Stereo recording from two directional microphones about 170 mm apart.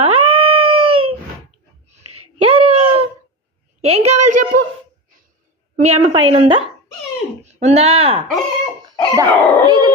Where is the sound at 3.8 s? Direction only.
40° right (ahead or behind).